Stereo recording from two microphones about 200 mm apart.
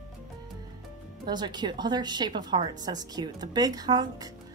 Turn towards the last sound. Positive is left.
turn(degrees=-20)  # may be behind; listen again after turning